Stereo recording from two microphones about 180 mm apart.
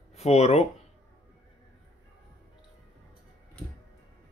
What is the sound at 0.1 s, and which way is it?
Speech, 35° left (ahead or behind).